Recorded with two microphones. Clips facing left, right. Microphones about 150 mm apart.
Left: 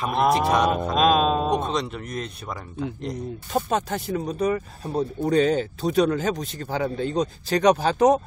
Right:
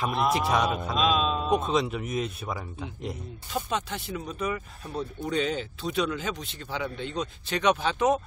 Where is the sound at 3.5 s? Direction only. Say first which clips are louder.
Left 6 dB; 45° left (ahead or behind).